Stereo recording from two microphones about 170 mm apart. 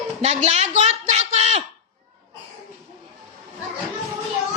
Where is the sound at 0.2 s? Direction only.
40° right (ahead or behind).